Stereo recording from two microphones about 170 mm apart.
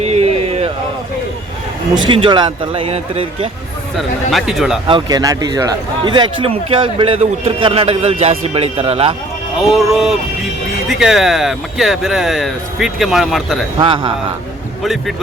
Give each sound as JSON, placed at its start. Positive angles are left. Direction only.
{"t": 0.0, "sound": "a sound", "side_deg": -40}
{"t": 2.0, "sound": "a man's voice", "side_deg": -30}
{"t": 3.9, "sound": "speech", "side_deg": 0}
{"t": 4.9, "sound": "a man's voice", "side_deg": -25}
{"t": 9.6, "sound": "speech", "side_deg": 0}
{"t": 13.7, "sound": "a man's voice", "side_deg": -30}